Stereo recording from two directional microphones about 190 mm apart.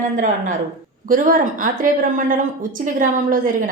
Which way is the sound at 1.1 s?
45° right (ahead or behind).